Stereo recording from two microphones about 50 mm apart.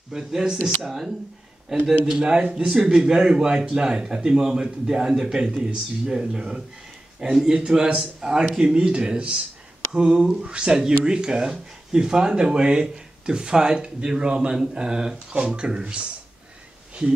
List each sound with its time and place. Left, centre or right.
0.1 s speech: centre